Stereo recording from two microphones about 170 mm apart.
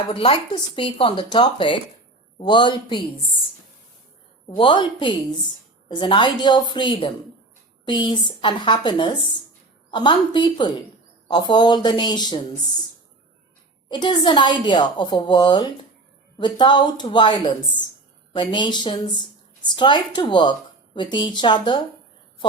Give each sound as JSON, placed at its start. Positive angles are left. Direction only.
{"t": 0.1, "sound": "a woman's voice", "side_deg": 35}
{"t": 4.4, "sound": "a woman's voice", "side_deg": 30}
{"t": 13.8, "sound": "a woman's voice", "side_deg": 25}